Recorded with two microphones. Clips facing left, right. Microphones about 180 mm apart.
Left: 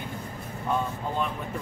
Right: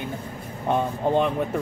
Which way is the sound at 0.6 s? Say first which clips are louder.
Right 6 dB; 70° right (ahead or behind).